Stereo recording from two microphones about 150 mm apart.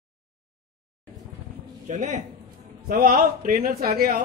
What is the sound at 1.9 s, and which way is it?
Speech, 55° right (ahead or behind).